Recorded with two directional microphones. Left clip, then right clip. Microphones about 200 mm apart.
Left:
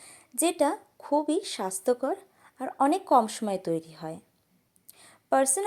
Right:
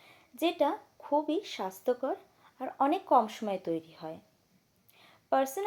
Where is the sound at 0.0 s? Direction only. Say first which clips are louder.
Left 3 dB; 30° left (ahead or behind).